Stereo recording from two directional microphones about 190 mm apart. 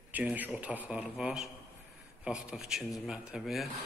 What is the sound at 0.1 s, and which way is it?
Speech, 10° right (ahead or behind).